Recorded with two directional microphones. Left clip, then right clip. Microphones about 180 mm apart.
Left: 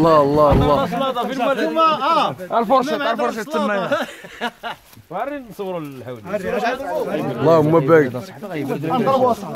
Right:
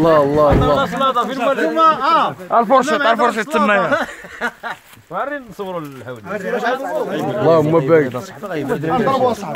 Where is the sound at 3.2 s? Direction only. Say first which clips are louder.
Right 6 dB; 40° right (ahead or behind).